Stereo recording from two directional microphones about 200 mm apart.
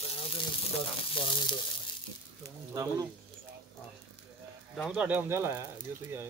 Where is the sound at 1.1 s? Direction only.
25° left (ahead or behind).